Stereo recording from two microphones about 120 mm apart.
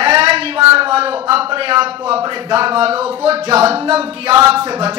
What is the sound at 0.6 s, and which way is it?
A man's voice, 50° right (ahead or behind).